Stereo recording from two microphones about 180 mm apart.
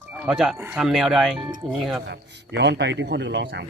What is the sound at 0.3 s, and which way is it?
Speech, 5° right (ahead or behind).